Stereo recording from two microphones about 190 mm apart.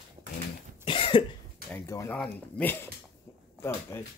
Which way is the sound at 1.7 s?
15° left (ahead or behind).